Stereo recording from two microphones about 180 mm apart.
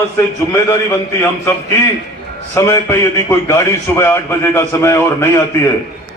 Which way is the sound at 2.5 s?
15° left (ahead or behind).